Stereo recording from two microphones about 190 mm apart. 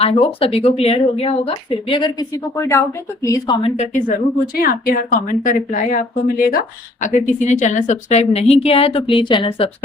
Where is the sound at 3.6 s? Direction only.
40° left (ahead or behind).